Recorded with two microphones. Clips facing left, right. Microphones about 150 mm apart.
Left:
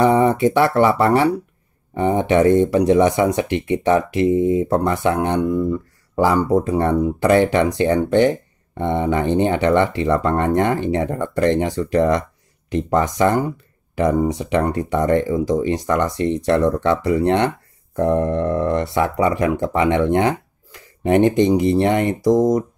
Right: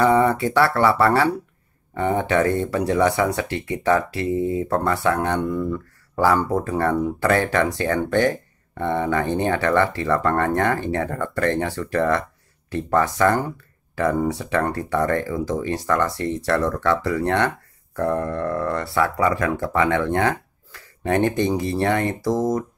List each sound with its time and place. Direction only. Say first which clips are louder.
0.0 s speech: left 3 dB; 20° left (ahead or behind)